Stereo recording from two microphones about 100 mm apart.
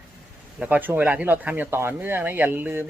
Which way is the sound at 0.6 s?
15° right (ahead or behind).